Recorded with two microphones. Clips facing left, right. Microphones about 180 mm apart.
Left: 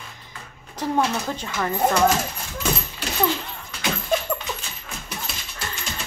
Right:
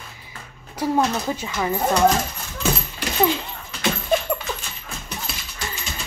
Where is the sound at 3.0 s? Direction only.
15° right (ahead or behind).